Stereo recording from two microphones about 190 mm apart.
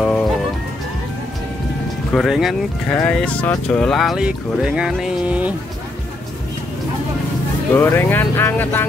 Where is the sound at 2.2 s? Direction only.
Centre (ahead or behind).